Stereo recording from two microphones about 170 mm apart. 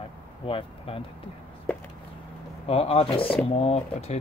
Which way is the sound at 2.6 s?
35° left (ahead or behind).